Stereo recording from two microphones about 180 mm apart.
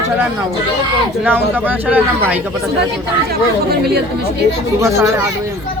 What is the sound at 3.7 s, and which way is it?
Speech, 60° right (ahead or behind).